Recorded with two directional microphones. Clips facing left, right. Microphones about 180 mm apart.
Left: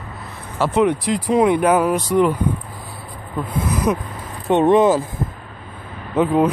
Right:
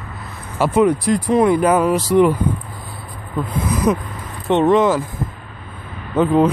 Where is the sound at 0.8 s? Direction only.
Centre (ahead or behind).